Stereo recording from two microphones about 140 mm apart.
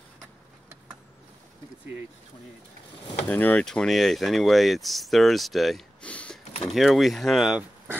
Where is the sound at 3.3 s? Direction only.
10° left (ahead or behind).